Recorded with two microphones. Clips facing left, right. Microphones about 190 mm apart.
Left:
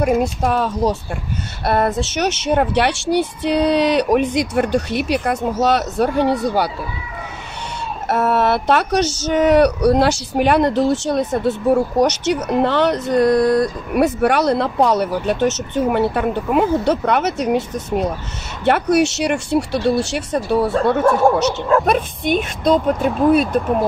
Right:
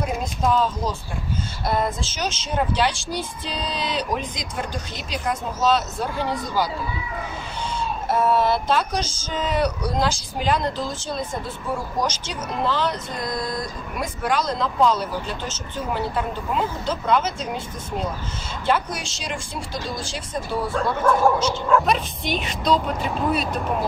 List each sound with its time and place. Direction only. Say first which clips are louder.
0.0 s speech: left 8 dB; 65° left (ahead or behind)
8.1 s speech: left 3 dB; 70° left (ahead or behind); by 23.5 s 50° left (ahead or behind)